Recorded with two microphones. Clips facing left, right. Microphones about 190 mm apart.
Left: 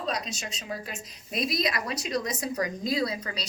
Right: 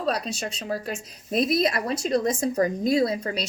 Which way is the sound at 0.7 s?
55° right (ahead or behind).